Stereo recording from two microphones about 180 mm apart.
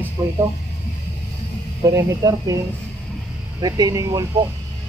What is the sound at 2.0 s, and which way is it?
Speech, 20° right (ahead or behind).